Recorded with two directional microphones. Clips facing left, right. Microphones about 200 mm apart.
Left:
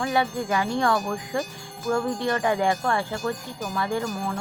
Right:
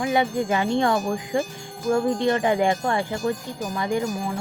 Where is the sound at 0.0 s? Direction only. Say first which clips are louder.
Right 3 dB; 20° right (ahead or behind).